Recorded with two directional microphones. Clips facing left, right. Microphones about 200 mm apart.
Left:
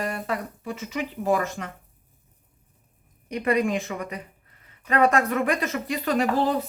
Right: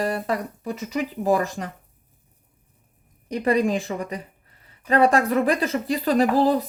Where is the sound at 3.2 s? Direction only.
35° right (ahead or behind).